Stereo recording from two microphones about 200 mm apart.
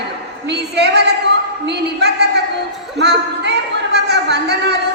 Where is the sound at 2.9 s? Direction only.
55° right (ahead or behind).